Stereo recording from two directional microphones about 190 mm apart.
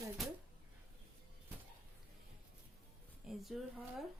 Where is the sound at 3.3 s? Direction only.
Centre (ahead or behind).